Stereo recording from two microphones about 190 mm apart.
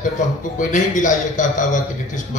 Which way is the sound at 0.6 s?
40° left (ahead or behind).